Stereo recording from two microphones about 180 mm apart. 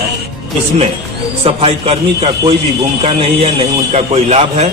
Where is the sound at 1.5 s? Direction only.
35° right (ahead or behind).